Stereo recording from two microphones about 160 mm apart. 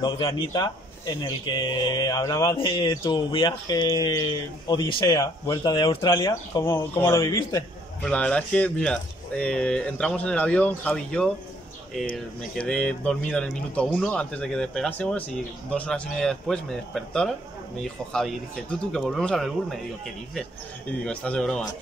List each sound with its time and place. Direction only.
0.0 s speech: 35° left (ahead or behind)
0.5 s speech: 25° left (ahead or behind)
2.5 s speech: 30° left (ahead or behind)
2.9 s speech: 20° left (ahead or behind)
6.1 s speech: 20° left (ahead or behind)
8.0 s speech: 5° left (ahead or behind)
21.0 s speech: 5° left (ahead or behind)